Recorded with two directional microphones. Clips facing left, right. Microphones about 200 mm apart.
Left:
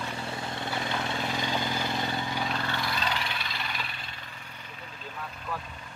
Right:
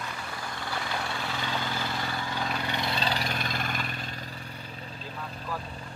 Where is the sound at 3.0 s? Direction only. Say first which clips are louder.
Right 3 dB; 40° right (ahead or behind).